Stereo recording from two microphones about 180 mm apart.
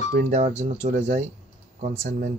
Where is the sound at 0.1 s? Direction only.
40° right (ahead or behind).